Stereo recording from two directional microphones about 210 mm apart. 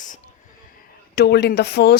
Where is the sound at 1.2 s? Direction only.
50° left (ahead or behind).